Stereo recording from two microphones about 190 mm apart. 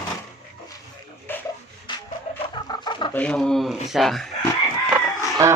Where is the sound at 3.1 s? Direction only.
5° left (ahead or behind).